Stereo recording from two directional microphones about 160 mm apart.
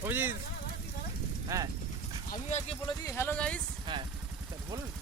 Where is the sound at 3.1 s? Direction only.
15° left (ahead or behind).